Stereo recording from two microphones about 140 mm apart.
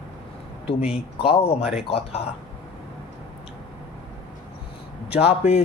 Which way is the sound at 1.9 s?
45° left (ahead or behind).